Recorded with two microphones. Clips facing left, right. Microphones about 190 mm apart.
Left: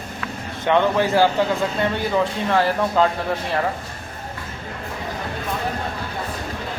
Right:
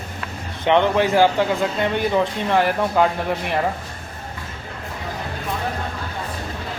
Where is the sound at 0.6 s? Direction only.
20° right (ahead or behind).